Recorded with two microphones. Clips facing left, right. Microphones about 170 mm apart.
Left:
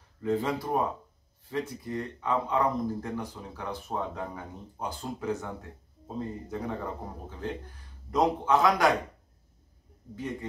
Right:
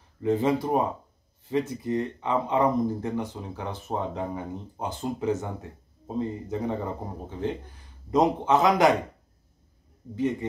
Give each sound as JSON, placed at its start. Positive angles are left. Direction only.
{"t": 0.2, "sound": "speech", "side_deg": -20}